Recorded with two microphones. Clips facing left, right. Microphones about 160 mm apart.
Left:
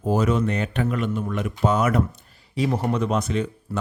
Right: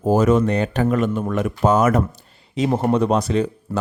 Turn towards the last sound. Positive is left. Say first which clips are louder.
# right 5 dB
turn(degrees=-35)  # may be behind; listen again after turning